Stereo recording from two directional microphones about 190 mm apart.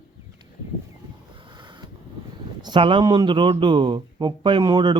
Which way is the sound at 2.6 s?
25° right (ahead or behind).